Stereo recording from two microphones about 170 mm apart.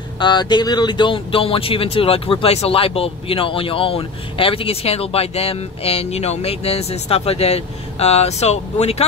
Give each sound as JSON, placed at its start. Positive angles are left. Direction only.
{"t": 0.2, "sound": "speech", "side_deg": 25}